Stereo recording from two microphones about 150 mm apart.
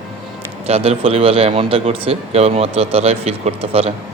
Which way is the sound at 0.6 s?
45° right (ahead or behind).